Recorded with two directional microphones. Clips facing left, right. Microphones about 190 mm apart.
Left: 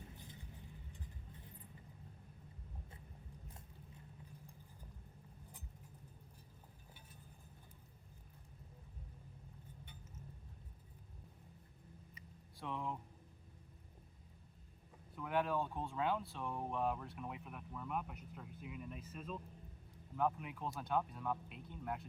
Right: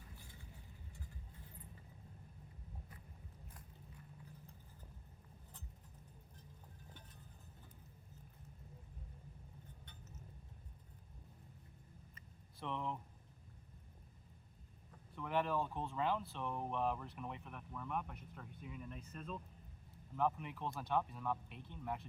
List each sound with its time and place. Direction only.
0.2 s vehicle: 20° left (ahead or behind)
9.8 s vehicle: 10° left (ahead or behind)
12.5 s speech: 5° left (ahead or behind)
15.1 s speech: 5° left (ahead or behind)